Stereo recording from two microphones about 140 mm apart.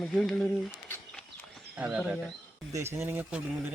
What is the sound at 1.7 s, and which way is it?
Speech, 10° right (ahead or behind).